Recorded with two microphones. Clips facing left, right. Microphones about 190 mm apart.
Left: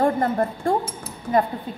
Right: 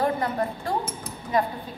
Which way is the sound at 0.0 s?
50° left (ahead or behind).